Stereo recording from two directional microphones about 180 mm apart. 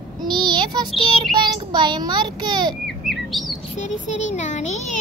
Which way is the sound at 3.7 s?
40° left (ahead or behind).